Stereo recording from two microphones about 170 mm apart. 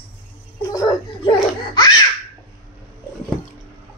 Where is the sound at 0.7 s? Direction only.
25° left (ahead or behind).